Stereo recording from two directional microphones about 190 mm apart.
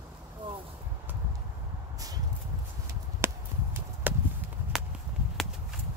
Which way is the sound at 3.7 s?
10° right (ahead or behind).